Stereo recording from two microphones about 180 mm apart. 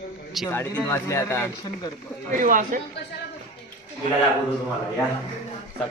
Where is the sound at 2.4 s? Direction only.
45° right (ahead or behind).